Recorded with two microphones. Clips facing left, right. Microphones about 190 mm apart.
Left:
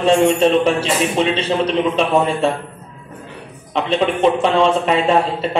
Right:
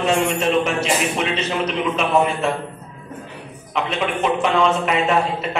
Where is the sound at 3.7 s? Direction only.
30° left (ahead or behind).